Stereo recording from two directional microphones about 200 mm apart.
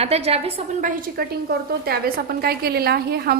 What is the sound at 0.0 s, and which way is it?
A woman's voice, 30° right (ahead or behind).